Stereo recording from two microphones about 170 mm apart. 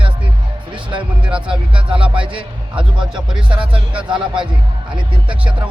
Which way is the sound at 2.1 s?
30° right (ahead or behind).